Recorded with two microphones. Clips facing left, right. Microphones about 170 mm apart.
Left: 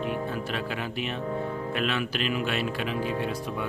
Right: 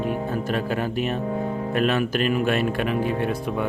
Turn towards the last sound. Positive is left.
turn(degrees=-55)  # may be behind; listen again after turning